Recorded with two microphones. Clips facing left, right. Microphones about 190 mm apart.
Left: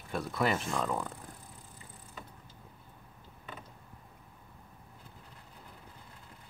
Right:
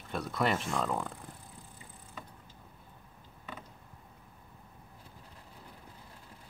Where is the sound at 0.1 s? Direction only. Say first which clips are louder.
Even; centre (ahead or behind).